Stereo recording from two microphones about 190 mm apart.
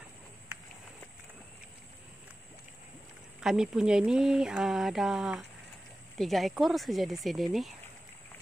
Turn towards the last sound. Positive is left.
turn(degrees=0)  # may be behind; listen again after turning